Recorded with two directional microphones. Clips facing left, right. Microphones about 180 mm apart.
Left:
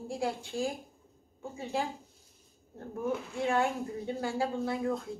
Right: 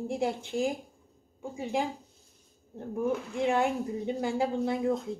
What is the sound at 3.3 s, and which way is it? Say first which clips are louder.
A woman's voice: right 2 dB; 20° right (ahead or behind).